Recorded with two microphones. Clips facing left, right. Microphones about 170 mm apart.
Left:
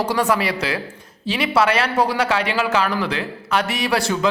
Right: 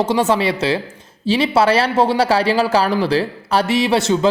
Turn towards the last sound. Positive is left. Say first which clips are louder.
# right 5 dB
turn(degrees=-25)  # may be behind; listen again after turning